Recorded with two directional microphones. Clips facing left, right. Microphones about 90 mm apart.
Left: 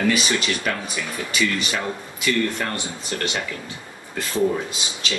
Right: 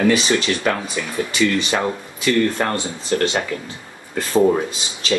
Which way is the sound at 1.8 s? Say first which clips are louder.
Right 5 dB; 45° right (ahead or behind).